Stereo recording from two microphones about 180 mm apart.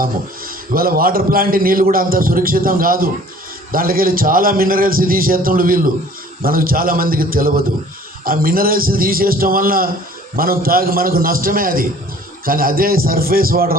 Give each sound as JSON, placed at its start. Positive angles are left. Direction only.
{"t": 0.0, "sound": "a man's voice", "side_deg": -55}